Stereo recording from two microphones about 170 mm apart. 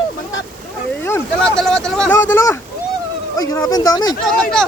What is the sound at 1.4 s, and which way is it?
Speech, 5° left (ahead or behind).